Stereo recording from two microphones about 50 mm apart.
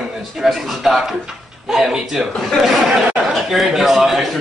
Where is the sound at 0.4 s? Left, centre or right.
Centre.